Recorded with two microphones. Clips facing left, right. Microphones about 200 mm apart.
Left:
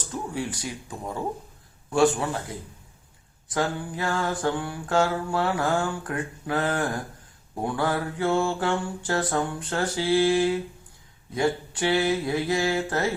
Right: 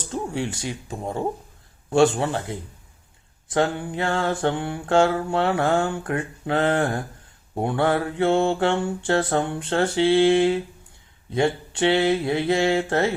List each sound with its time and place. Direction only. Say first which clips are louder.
0.0 s speech: right 4 dB; 25° right (ahead or behind)
1.9 s mantra: right 3 dB; 25° right (ahead or behind)